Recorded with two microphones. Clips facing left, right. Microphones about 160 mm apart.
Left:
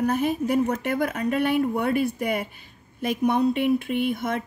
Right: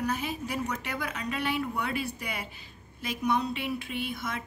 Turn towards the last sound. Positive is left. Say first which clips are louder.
# left 10 dB
turn(degrees=55)  # may be behind; listen again after turning